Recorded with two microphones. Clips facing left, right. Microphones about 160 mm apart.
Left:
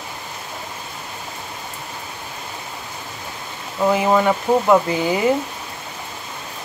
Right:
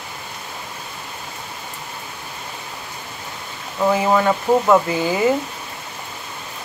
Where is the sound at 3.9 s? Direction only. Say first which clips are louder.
Even; 15° left (ahead or behind).